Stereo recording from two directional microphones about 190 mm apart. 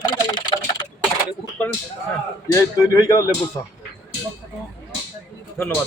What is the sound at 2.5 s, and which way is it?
Speech, 15° left (ahead or behind).